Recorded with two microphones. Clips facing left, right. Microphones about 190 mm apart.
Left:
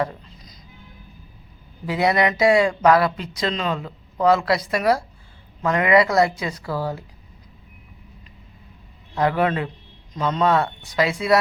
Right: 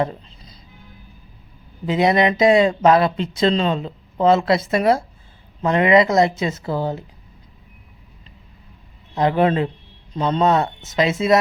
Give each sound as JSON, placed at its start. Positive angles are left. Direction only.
{"t": 0.0, "sound": "music", "side_deg": -25}
{"t": 1.9, "sound": "speech", "side_deg": -20}
{"t": 9.1, "sound": "a man's voice", "side_deg": -20}